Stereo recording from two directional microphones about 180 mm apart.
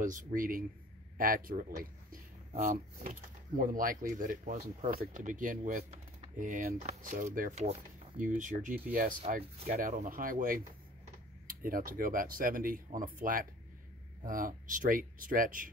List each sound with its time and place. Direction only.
0.0 s speech: 45° right (ahead or behind)
2.5 s speech: 40° right (ahead or behind)
11.6 s speech: 50° right (ahead or behind)